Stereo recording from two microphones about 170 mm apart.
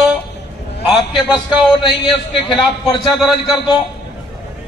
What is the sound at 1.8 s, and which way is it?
Speech, 30° left (ahead or behind).